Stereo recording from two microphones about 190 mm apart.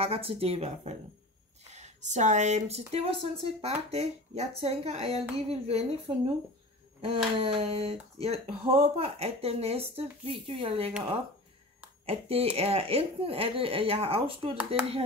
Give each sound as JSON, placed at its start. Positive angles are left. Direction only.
{"t": 0.0, "sound": "speech", "side_deg": -30}
{"t": 7.3, "sound": "speech", "side_deg": -30}
{"t": 12.1, "sound": "speech", "side_deg": -30}